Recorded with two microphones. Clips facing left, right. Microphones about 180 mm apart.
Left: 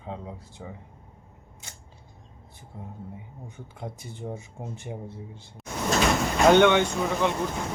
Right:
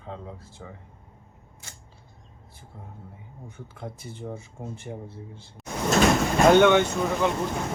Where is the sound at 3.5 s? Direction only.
15° left (ahead or behind).